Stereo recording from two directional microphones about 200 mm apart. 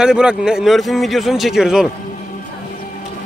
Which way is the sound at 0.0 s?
5° right (ahead or behind).